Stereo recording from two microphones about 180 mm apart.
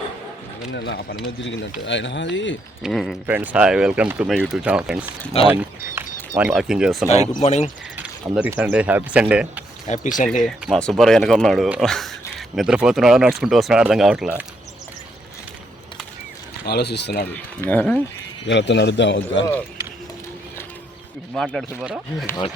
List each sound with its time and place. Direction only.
0.7 s speech: 70° left (ahead or behind)
1.5 s speech: 90° left
2.8 s speech: centre (ahead or behind)
5.3 s speech: 35° left (ahead or behind)
5.9 s a sound: 10° right (ahead or behind)
6.5 s speech: centre (ahead or behind)
7.3 s speech: 35° left (ahead or behind)
7.9 s speech: 10° right (ahead or behind)
9.8 s speech: 40° left (ahead or behind)
10.4 s speech: 5° left (ahead or behind)
16.6 s speech: 65° left (ahead or behind)
17.3 s speech: 10° left (ahead or behind)
18.4 s a man's voice: 80° left
21.3 s speech: centre (ahead or behind)